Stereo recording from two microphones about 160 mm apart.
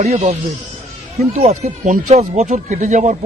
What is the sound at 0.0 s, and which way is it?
Speech, 40° right (ahead or behind).